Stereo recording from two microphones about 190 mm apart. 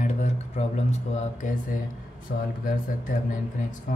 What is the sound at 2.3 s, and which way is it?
Speech, 50° left (ahead or behind).